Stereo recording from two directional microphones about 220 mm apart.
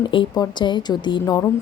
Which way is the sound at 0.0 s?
20° left (ahead or behind).